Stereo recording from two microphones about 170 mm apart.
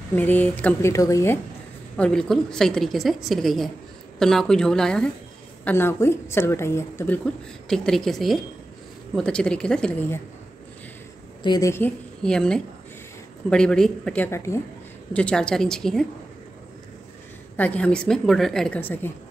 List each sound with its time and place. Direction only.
0.1 s a woman's voice: 10° left (ahead or behind)
2.0 s a woman's voice: 5° left (ahead or behind)
7.6 s a woman's voice: 5° left (ahead or behind)
11.4 s a woman's voice: 20° left (ahead or behind)
12.2 s a woman's voice: 5° left (ahead or behind)
15.1 s a woman's voice: 5° left (ahead or behind)
17.6 s a woman's voice: 10° left (ahead or behind)